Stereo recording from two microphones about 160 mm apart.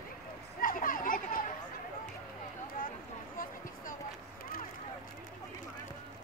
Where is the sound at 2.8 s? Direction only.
60° left (ahead or behind).